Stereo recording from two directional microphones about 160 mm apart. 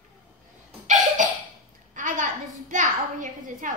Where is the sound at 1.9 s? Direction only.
55° right (ahead or behind).